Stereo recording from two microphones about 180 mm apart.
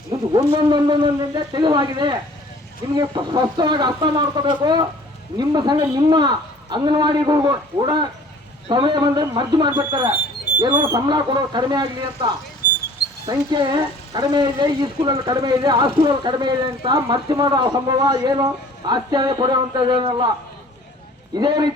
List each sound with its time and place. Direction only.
0.3 s speech: 25° right (ahead or behind)
13.2 s speech: 25° right (ahead or behind)
21.3 s speech: 25° right (ahead or behind)